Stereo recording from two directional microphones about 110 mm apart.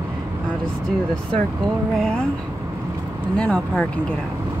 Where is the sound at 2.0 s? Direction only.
5° left (ahead or behind).